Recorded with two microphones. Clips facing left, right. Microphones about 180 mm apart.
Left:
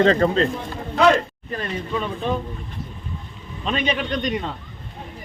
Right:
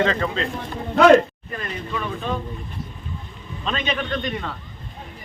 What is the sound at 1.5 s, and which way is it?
Speech, 30° left (ahead or behind).